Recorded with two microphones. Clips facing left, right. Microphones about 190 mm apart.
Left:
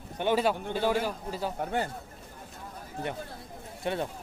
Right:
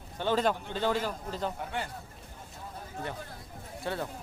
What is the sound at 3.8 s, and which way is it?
Speech, 20° left (ahead or behind).